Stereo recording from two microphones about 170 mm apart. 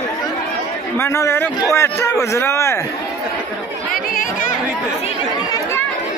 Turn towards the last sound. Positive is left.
turn(degrees=55)  # may be behind; listen again after turning